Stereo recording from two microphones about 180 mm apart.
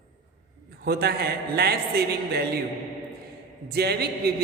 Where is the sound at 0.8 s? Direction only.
65° right (ahead or behind).